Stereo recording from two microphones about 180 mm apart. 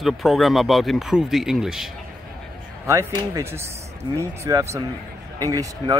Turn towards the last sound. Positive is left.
turn(degrees=-20)  # may be behind; listen again after turning